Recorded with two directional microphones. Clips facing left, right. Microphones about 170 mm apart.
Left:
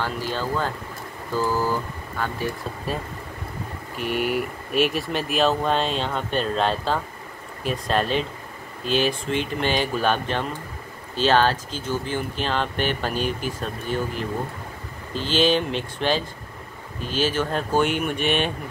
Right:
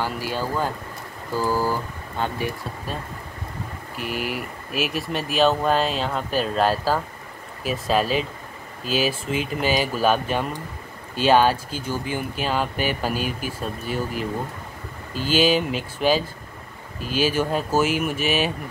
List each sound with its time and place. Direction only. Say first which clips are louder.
0.0 s speech: right 1 dB; 10° right (ahead or behind)
3.9 s speech: left 4 dB; centre (ahead or behind)